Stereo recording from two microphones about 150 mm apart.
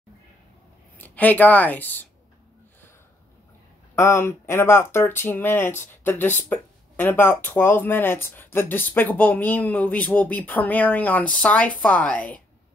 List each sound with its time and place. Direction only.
0.9 s speech: 10° left (ahead or behind)
3.9 s speech: 15° left (ahead or behind)